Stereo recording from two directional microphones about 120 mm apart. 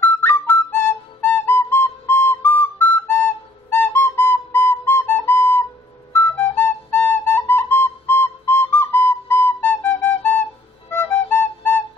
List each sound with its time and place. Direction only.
0.0 s flute: 15° left (ahead or behind)